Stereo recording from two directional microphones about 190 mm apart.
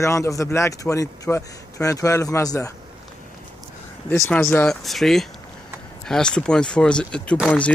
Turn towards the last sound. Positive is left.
turn(degrees=5)  # may be behind; listen again after turning